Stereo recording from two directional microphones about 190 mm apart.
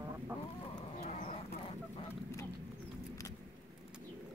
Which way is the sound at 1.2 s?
50° left (ahead or behind).